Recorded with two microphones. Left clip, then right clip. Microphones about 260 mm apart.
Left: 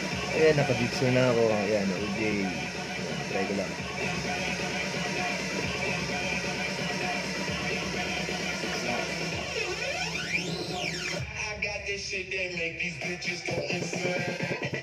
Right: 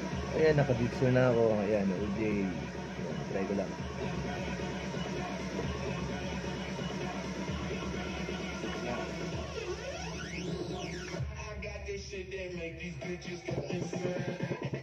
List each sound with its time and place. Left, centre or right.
0.4 s speech: left